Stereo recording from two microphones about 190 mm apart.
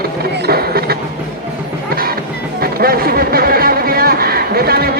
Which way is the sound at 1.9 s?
50° right (ahead or behind).